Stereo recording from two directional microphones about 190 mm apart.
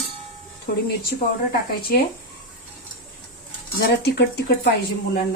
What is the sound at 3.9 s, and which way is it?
Speech, 60° left (ahead or behind).